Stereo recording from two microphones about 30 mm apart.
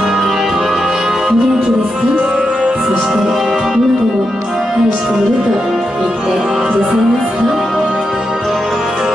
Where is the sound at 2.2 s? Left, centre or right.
Right.